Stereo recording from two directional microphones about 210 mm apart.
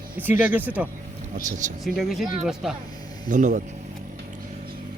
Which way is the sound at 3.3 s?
35° right (ahead or behind).